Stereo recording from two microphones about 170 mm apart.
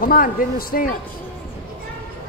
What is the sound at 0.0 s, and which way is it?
Speech, 55° left (ahead or behind).